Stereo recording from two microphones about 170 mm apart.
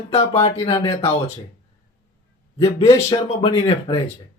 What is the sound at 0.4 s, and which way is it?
Speech, 35° left (ahead or behind).